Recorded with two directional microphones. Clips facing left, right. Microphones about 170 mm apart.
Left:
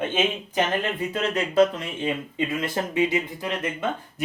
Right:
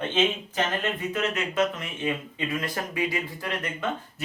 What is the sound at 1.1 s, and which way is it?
Speech, 35° left (ahead or behind).